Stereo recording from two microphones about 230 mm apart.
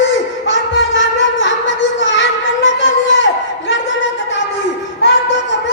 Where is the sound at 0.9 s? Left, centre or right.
Left.